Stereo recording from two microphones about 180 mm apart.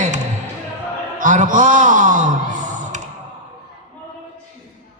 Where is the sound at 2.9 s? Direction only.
40° right (ahead or behind).